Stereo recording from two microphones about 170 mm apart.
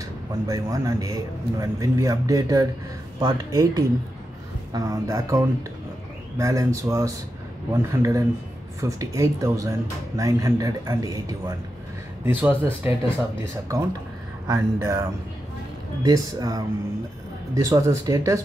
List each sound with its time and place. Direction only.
0.5 s speech: 20° right (ahead or behind)